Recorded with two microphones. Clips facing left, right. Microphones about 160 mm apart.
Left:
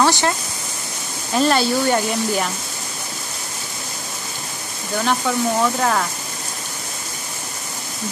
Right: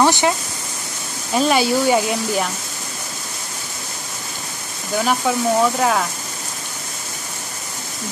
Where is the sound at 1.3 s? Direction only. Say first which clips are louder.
Right 1 dB; 5° right (ahead or behind).